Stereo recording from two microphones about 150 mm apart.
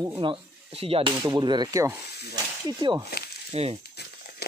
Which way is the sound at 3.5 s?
45° right (ahead or behind).